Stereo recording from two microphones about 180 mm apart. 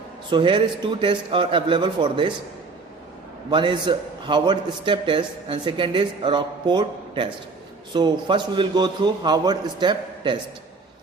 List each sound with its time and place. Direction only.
0.3 s a man's voice: 25° right (ahead or behind)
3.5 s a man's voice: 25° right (ahead or behind)